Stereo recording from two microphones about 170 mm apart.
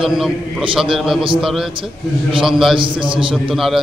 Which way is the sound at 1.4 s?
Centre (ahead or behind).